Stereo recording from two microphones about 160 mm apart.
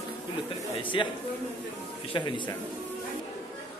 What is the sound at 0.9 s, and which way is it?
Speech, 30° left (ahead or behind).